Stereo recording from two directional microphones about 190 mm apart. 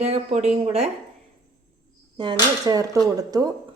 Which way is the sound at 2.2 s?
25° right (ahead or behind).